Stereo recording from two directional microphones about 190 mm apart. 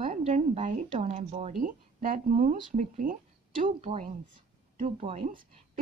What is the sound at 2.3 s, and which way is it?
A woman's voice, 45° right (ahead or behind).